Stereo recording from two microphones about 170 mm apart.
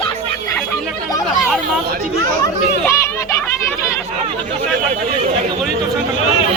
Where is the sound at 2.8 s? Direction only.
15° left (ahead or behind).